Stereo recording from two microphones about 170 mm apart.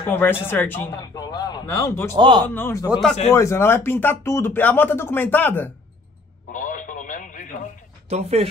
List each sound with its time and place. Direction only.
0.0 s a man's voice: 15° left (ahead or behind)
2.1 s speech: 25° right (ahead or behind)
2.4 s speech: 10° left (ahead or behind)
2.9 s a man's voice: centre (ahead or behind)
3.3 s speech: 15° left (ahead or behind)
6.5 s radio: 50° left (ahead or behind)
8.1 s speech: 40° right (ahead or behind)